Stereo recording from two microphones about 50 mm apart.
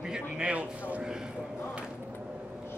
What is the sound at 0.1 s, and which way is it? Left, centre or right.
Speech, right.